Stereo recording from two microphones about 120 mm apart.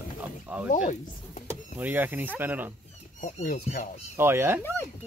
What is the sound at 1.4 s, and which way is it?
Power windows, 15° right (ahead or behind).